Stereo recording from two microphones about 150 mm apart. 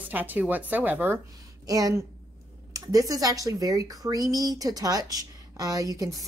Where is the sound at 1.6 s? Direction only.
25° right (ahead or behind).